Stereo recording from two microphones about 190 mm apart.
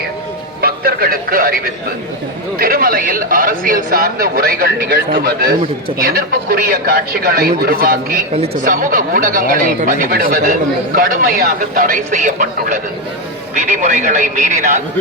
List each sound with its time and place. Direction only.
0.6 s a man's voice: 50° right (ahead or behind)